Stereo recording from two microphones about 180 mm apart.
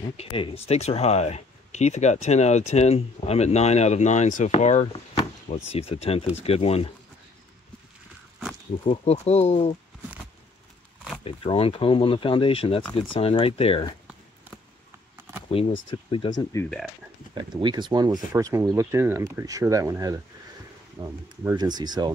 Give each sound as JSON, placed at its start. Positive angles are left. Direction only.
{"t": 0.2, "sound": "speech", "side_deg": 30}
{"t": 4.9, "sound": "chop", "side_deg": 35}
{"t": 5.7, "sound": "speech", "side_deg": 35}
{"t": 8.8, "sound": "speech", "side_deg": 35}
{"t": 11.2, "sound": "speech", "side_deg": 30}
{"t": 16.5, "sound": "speech", "side_deg": 15}
{"t": 17.3, "sound": "speech", "side_deg": -25}